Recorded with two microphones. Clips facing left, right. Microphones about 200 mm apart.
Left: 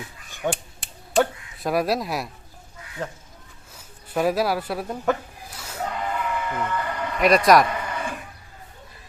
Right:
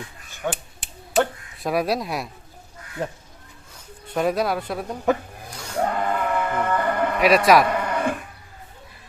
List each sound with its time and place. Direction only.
0.4 s speech: 15° left (ahead or behind)
1.2 s speech: centre (ahead or behind)
3.0 s speech: 15° right (ahead or behind)
3.8 s speech: 5° left (ahead or behind)
5.5 s music: 5° left (ahead or behind)
5.8 s bleat: 55° right (ahead or behind)
7.2 s a man's voice: 5° right (ahead or behind)
7.7 s sheep: 60° right (ahead or behind)